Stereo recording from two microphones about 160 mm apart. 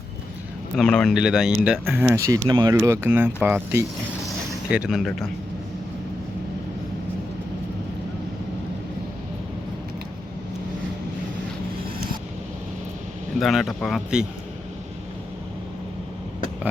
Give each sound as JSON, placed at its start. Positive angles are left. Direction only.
{"t": 0.8, "sound": "speech", "side_deg": 5}
{"t": 2.7, "sound": "speech", "side_deg": -15}
{"t": 13.4, "sound": "speech", "side_deg": 0}